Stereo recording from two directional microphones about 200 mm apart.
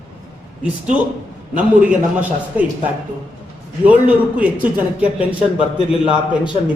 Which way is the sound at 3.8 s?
5° right (ahead or behind).